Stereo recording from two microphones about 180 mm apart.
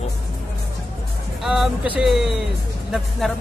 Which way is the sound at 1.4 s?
Centre (ahead or behind).